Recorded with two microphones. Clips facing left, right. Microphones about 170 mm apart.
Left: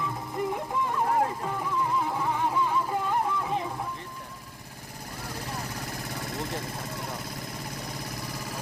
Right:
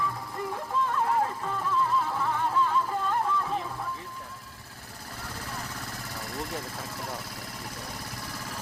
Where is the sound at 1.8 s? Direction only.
15° left (ahead or behind).